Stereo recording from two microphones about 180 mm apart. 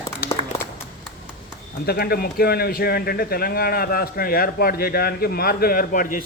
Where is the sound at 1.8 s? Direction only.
60° left (ahead or behind).